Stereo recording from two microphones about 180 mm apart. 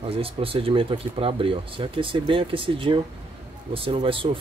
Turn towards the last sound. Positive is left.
turn(degrees=-30)  # may be behind; listen again after turning